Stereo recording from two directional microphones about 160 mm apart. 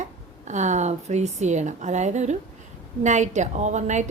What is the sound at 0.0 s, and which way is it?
A woman's voice, 50° right (ahead or behind).